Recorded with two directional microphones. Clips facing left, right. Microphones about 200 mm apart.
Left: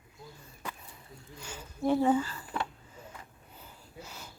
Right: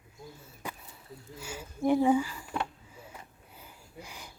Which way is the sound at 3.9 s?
15° right (ahead or behind).